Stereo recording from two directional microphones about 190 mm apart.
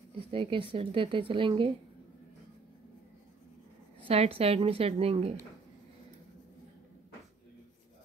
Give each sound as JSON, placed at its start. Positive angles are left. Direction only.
{"t": 0.1, "sound": "speech", "side_deg": -25}
{"t": 4.1, "sound": "a woman's voice", "side_deg": -30}